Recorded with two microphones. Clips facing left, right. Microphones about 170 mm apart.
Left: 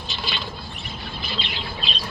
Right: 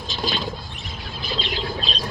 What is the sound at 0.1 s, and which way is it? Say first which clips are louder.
Rodents: right 6 dB; 40° right (ahead or behind).